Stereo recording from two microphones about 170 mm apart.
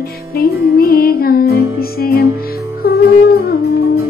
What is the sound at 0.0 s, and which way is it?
Music, 60° left (ahead or behind).